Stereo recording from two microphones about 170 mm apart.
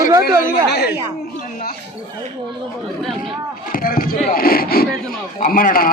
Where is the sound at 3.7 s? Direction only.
60° left (ahead or behind).